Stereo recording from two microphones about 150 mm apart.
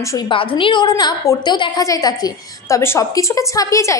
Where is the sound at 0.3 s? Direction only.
35° left (ahead or behind).